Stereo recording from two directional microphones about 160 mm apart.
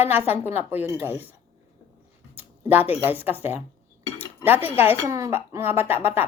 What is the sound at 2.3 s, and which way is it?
A woman's voice, 10° right (ahead or behind).